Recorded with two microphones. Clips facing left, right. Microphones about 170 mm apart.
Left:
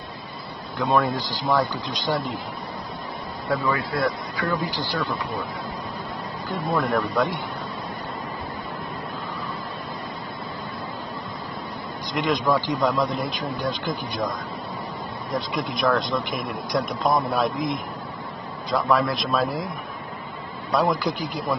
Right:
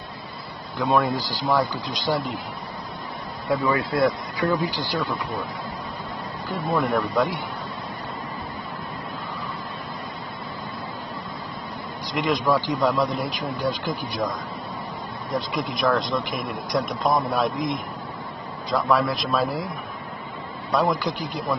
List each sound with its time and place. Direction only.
0.7 s speech: centre (ahead or behind)
3.7 s speech: 20° right (ahead or behind)
6.5 s speech: centre (ahead or behind)
12.1 s speech: centre (ahead or behind)
15.3 s speech: centre (ahead or behind)
20.7 s speech: centre (ahead or behind)